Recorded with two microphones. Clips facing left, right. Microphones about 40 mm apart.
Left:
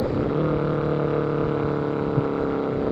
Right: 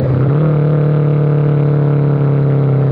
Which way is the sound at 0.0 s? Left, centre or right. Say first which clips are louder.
Right 8 dB; right.